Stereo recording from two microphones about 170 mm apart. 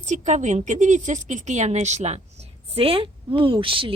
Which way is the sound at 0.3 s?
45° right (ahead or behind).